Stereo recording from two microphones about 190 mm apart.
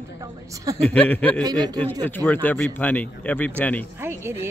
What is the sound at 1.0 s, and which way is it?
Speech, 10° left (ahead or behind).